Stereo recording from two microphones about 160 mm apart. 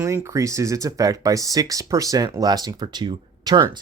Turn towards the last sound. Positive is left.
turn(degrees=-25)  # may be behind; listen again after turning